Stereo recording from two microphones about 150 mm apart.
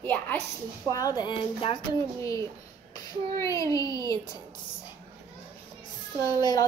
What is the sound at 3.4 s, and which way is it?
Speech, 20° left (ahead or behind).